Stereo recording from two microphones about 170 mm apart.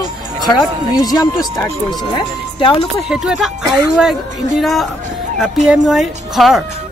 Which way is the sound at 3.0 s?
Centre (ahead or behind).